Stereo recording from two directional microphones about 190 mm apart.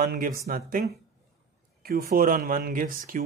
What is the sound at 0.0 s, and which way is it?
Speech, 50° right (ahead or behind).